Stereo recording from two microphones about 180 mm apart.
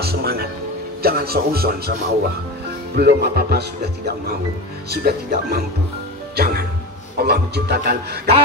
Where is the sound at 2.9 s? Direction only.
65° right (ahead or behind).